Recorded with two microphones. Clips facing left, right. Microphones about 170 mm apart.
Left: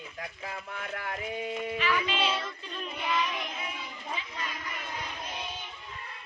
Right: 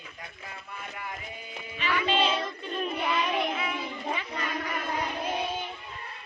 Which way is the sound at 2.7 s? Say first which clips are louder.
Right 4 dB; 60° right (ahead or behind).